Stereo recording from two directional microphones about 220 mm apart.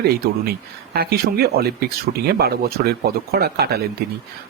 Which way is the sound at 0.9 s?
45° right (ahead or behind).